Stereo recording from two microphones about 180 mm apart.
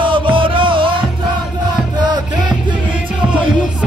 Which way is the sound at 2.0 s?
25° right (ahead or behind).